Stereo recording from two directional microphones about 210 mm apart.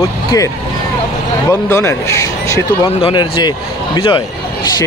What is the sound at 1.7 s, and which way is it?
Speech, 15° left (ahead or behind).